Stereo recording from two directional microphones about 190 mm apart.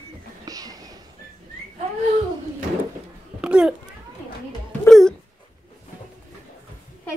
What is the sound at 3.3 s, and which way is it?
Babbling, 5° right (ahead or behind).